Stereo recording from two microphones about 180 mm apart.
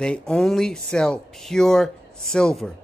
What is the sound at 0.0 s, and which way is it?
Speech, 5° left (ahead or behind).